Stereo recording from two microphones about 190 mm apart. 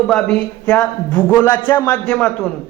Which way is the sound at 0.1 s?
5° left (ahead or behind).